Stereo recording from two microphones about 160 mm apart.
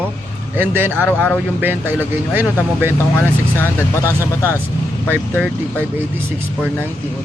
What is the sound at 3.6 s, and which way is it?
Speech, 15° left (ahead or behind).